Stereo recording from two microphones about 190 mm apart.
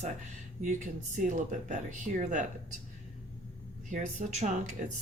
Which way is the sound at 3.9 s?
40° right (ahead or behind).